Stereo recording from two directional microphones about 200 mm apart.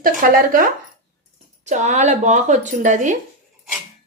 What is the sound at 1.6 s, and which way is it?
Speech, 35° right (ahead or behind).